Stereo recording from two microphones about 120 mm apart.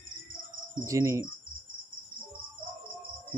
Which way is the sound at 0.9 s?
25° right (ahead or behind).